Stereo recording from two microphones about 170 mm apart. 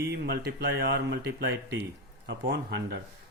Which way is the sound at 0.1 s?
80° right.